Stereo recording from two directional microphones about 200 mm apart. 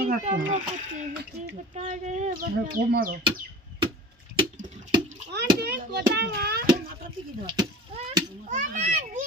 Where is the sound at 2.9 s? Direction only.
45° right (ahead or behind).